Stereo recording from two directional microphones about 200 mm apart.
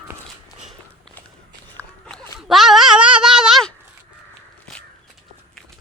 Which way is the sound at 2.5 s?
Centre (ahead or behind).